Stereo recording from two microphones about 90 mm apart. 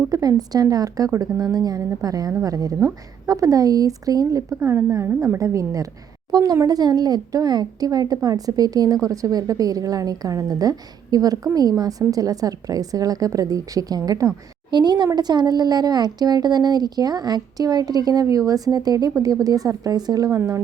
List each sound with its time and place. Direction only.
0.1 s a woman's voice: 45° right (ahead or behind)
14.7 s a woman's voice: 55° right (ahead or behind)
20.3 s speech: 30° right (ahead or behind)